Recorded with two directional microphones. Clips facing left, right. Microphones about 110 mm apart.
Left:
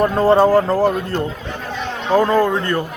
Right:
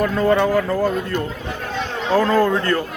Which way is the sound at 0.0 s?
35° left (ahead or behind).